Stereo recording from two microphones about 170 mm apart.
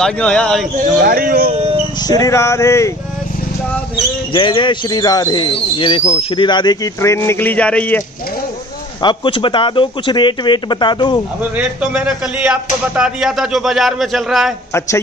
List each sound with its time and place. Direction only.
0.0 s a man's voice: 5° left (ahead or behind)
1.0 s speech: 60° right (ahead or behind)
1.5 s a sound: 35° right (ahead or behind)
2.0 s speech: 20° left (ahead or behind)
4.3 s speech: 30° left (ahead or behind); by 8.0 s 10° left (ahead or behind)
9.0 s speech: 30° left (ahead or behind)
11.5 s a man's voice: 5° right (ahead or behind)